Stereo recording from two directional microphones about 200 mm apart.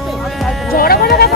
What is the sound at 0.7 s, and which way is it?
Speech, 50° left (ahead or behind).